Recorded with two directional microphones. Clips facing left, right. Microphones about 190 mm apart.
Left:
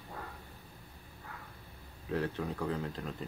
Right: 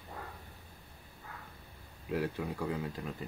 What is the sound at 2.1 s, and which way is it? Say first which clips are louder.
Speech: even; 10° right (ahead or behind).